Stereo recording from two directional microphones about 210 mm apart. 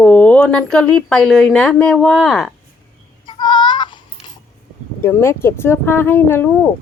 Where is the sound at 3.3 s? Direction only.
20° left (ahead or behind).